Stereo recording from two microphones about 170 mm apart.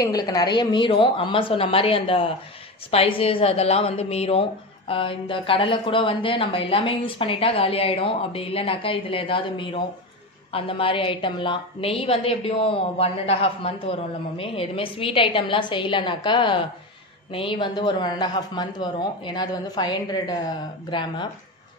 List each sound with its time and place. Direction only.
0.0 s a woman's voice: 20° left (ahead or behind)